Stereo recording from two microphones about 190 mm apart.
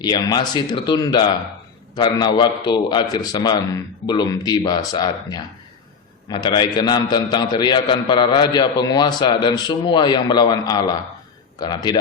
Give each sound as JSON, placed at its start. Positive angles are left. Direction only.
{"t": 0.0, "sound": "a man's voice", "side_deg": 20}